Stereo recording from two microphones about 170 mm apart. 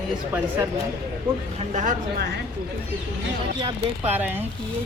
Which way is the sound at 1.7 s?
45° right (ahead or behind).